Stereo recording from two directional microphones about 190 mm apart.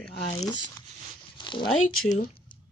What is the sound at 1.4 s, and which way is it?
Zipper, 25° left (ahead or behind).